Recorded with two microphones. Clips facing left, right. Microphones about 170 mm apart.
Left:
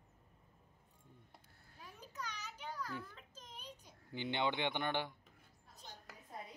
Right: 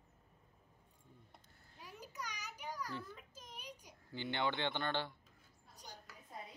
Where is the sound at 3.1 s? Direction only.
10° right (ahead or behind).